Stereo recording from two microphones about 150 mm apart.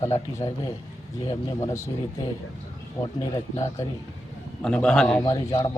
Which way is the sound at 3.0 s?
30° left (ahead or behind).